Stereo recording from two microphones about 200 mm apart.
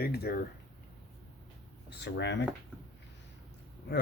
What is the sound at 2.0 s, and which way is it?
Speech, 60° left (ahead or behind).